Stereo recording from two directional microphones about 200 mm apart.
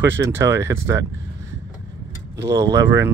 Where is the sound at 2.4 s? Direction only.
15° right (ahead or behind).